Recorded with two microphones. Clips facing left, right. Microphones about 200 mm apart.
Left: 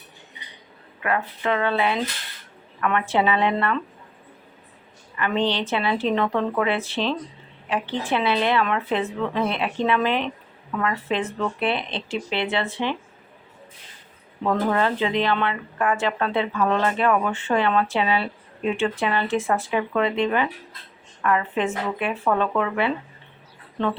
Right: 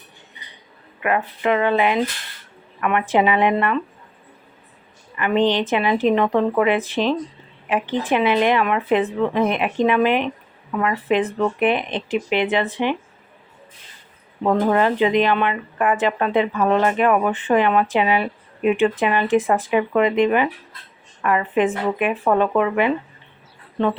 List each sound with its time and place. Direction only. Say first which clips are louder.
1.0 s speech: right 4 dB; 15° right (ahead or behind)
5.1 s speech: right 5 dB; 15° right (ahead or behind)
14.4 s speech: right 4 dB; 15° right (ahead or behind)